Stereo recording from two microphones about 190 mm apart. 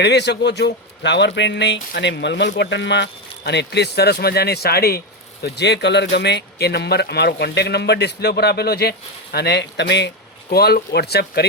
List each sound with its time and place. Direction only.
0.0 s a man's voice: 60° left (ahead or behind)